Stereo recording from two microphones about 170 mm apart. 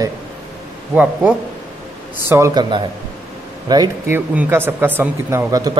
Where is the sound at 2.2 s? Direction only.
15° right (ahead or behind).